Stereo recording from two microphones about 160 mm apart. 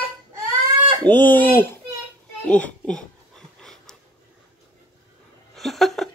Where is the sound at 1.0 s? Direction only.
10° left (ahead or behind).